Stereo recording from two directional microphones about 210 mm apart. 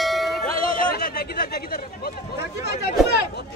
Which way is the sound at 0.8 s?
45° left (ahead or behind).